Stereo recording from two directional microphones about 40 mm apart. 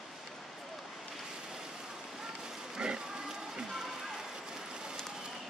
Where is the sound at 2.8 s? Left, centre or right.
Right.